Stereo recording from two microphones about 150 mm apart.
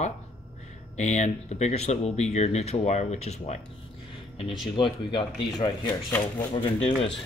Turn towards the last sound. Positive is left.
turn(degrees=40)  # may be behind; listen again after turning